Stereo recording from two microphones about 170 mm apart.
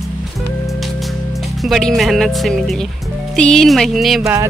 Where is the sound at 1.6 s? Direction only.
Centre (ahead or behind).